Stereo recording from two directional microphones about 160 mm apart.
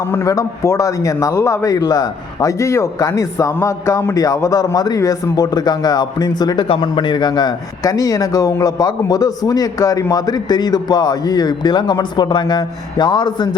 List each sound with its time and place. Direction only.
0.0 s a man's voice: 20° left (ahead or behind)